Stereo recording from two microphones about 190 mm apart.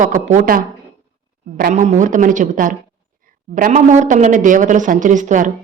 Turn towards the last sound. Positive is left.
turn(degrees=-40)  # may be behind; listen again after turning